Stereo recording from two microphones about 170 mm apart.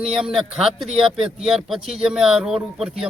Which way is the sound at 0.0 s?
5° right (ahead or behind).